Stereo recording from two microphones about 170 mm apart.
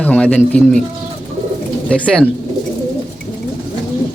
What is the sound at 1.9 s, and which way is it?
Speech, 5° left (ahead or behind).